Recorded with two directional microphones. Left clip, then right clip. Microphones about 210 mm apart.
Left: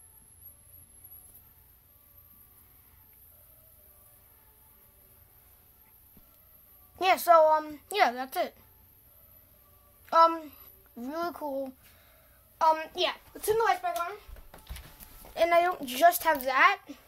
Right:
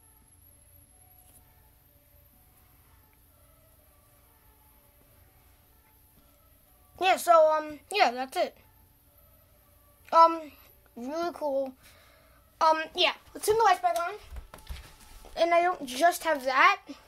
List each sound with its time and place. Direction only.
7.0 s a woman's voice: 10° right (ahead or behind)
10.0 s a child's voice: 10° right (ahead or behind); by 13.7 s 30° right (ahead or behind)
15.3 s a child's voice: centre (ahead or behind)